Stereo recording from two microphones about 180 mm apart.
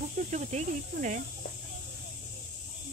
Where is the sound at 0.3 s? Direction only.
40° right (ahead or behind).